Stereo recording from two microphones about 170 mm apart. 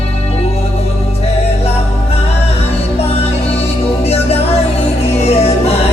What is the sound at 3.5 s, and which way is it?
Music, 35° left (ahead or behind).